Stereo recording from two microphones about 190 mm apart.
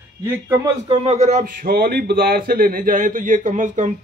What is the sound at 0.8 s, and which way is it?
Speech, 35° right (ahead or behind).